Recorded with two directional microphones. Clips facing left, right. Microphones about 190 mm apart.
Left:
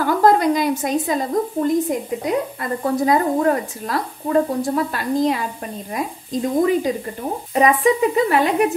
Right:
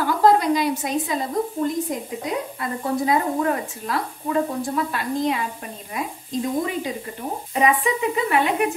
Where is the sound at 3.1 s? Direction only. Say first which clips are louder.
Left 5 dB; 40° left (ahead or behind).